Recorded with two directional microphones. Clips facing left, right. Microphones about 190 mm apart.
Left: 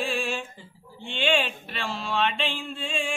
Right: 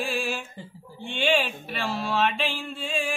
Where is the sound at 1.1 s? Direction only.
5° right (ahead or behind).